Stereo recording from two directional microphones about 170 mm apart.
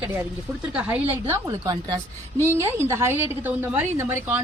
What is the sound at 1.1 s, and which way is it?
A woman's voice, 20° right (ahead or behind).